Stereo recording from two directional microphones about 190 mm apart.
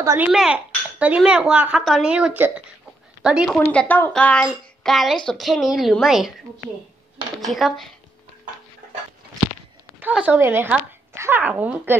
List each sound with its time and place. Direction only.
0.0 s speech: 15° right (ahead or behind)
0.3 s a woman's voice: centre (ahead or behind)
3.7 s a woman's voice: 10° left (ahead or behind)
7.3 s a woman's voice: centre (ahead or behind)
9.9 s speech: 10° right (ahead or behind)